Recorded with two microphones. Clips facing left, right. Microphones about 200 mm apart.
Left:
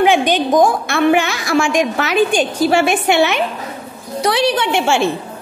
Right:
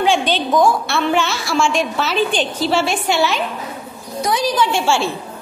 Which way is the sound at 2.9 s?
60° left (ahead or behind).